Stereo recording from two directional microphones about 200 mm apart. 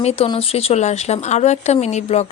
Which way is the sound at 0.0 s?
30° left (ahead or behind).